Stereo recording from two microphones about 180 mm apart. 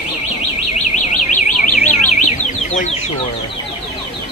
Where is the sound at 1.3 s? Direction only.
45° left (ahead or behind).